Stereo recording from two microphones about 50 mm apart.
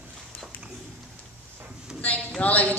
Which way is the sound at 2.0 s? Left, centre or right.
Left.